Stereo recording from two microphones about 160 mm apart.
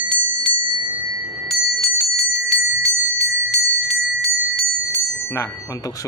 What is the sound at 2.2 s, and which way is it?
Bicycle bell, centre (ahead or behind).